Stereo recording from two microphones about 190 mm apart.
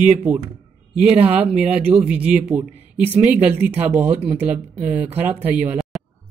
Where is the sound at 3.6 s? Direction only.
10° right (ahead or behind).